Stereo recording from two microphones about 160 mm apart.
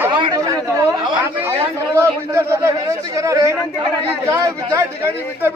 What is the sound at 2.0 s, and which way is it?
A man's voice, 20° right (ahead or behind).